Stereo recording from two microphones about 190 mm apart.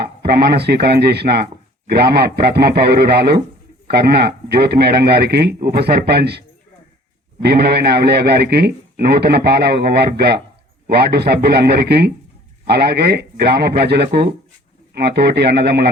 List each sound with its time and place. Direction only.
0.2 s a man's voice: 55° right (ahead or behind)
7.4 s a man's voice: 60° right (ahead or behind)